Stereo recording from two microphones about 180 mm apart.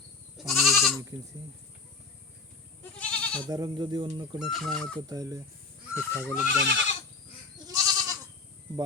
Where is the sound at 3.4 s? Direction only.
25° right (ahead or behind).